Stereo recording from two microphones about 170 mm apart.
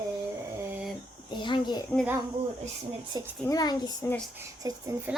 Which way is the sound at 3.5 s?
25° left (ahead or behind).